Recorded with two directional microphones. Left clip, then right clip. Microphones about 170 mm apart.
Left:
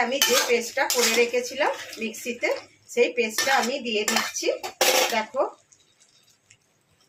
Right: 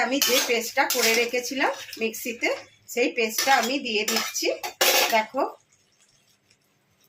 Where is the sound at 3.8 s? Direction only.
25° right (ahead or behind).